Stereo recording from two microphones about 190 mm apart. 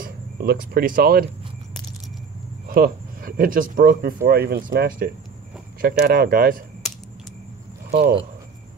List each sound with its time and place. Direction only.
0.0 s speech: 50° right (ahead or behind)
2.7 s speech: 50° right (ahead or behind)
6.8 s a sound: centre (ahead or behind)